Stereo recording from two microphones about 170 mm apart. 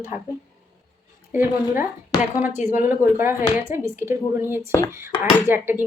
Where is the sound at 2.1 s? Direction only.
25° left (ahead or behind).